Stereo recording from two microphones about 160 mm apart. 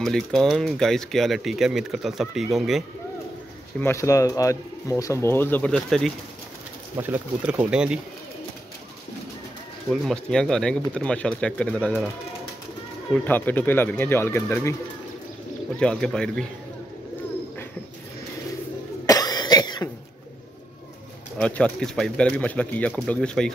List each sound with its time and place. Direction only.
0.0 s speech: 5° left (ahead or behind)
3.8 s speech: 15° left (ahead or behind); by 6.1 s centre (ahead or behind)
7.0 s speech: 10° right (ahead or behind)
10.0 s speech: 5° left (ahead or behind)
13.2 s speech: 10° left (ahead or behind)
15.8 s speech: 5° left (ahead or behind)
19.0 s cough: 25° left (ahead or behind)
21.4 s speech: 5° left (ahead or behind)